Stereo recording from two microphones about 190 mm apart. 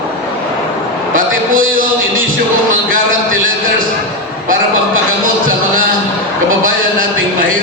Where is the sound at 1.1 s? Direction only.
45° right (ahead or behind).